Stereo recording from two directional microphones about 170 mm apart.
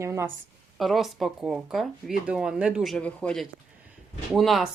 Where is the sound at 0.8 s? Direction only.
Centre (ahead or behind).